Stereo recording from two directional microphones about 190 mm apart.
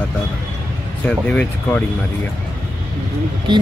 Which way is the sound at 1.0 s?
5° left (ahead or behind).